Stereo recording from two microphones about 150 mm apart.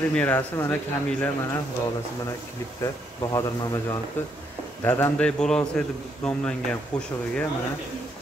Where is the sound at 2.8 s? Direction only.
25° left (ahead or behind).